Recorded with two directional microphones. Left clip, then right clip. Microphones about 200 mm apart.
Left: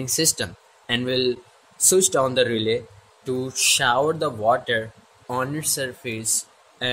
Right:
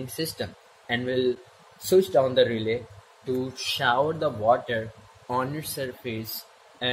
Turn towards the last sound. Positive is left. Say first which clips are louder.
# left 2 dB
turn(degrees=20)  # may be behind; listen again after turning